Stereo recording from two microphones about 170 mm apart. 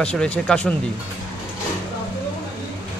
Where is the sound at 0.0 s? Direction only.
5° left (ahead or behind).